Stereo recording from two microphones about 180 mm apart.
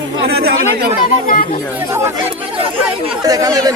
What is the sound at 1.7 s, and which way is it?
Speech, 15° right (ahead or behind).